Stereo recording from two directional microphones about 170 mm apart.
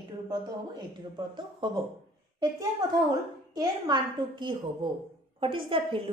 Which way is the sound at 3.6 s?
25° right (ahead or behind).